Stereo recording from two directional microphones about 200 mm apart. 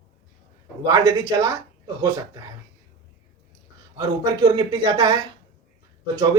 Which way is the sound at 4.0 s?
15° right (ahead or behind).